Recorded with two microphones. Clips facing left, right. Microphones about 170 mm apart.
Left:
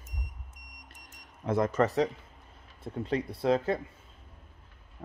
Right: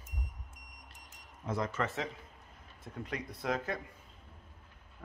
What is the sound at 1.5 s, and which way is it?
Speech, 45° left (ahead or behind).